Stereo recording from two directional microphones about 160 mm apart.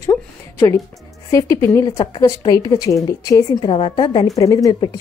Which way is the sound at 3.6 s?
30° left (ahead or behind).